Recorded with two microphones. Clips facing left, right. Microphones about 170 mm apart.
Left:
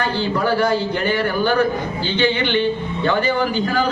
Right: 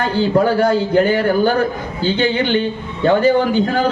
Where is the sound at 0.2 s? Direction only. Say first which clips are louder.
Right 6 dB; 40° right (ahead or behind).